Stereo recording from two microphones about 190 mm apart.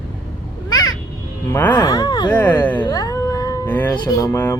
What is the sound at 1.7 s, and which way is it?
Speech, 20° left (ahead or behind).